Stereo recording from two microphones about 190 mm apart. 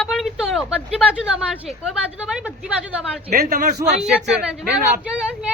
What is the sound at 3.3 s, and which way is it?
Speech, 45° right (ahead or behind).